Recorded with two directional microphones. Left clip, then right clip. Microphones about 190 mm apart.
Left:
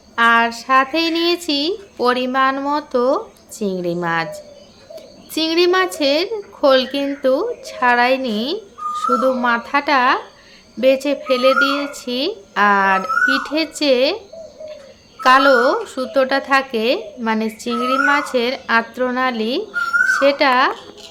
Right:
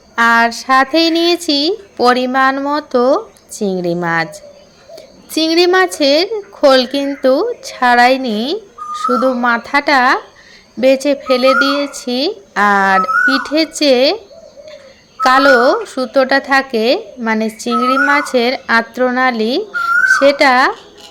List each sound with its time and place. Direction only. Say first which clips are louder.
0.2 s a woman's voice: right 3 dB; 25° right (ahead or behind)
15.2 s a woman's voice: right 3 dB; 20° right (ahead or behind)